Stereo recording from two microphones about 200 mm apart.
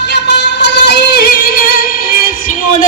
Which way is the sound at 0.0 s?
60° left (ahead or behind).